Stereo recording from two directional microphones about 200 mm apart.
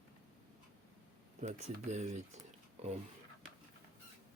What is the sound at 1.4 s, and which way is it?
Speech, 35° right (ahead or behind).